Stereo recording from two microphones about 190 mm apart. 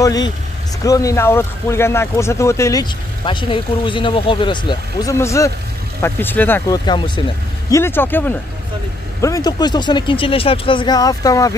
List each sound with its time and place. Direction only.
0.0 s speech: 20° left (ahead or behind)
6.9 s speech: 25° left (ahead or behind)
7.7 s speech: 10° left (ahead or behind)